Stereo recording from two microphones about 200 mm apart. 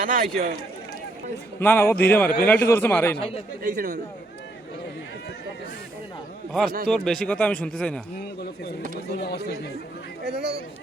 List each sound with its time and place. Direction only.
0.0 s speech: 40° right (ahead or behind)
1.5 s a man's voice: 10° left (ahead or behind)
3.2 s speech: 30° left (ahead or behind)
3.6 s speech: 45° right (ahead or behind)
6.5 s speech: centre (ahead or behind)
9.1 s speech: 55° left (ahead or behind)
10.2 s speech: 55° right (ahead or behind)